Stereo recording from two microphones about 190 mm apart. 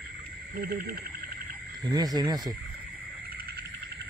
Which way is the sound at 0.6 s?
50° right (ahead or behind).